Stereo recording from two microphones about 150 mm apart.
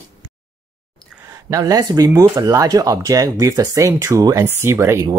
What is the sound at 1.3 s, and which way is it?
Speech, 25° right (ahead or behind).